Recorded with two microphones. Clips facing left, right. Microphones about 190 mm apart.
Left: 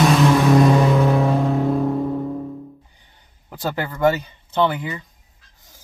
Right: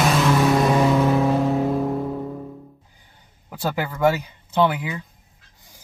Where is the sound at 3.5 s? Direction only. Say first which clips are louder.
Even; 10° right (ahead or behind).